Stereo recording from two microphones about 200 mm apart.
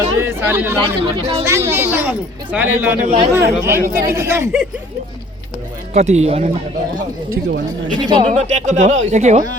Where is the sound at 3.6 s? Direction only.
10° right (ahead or behind).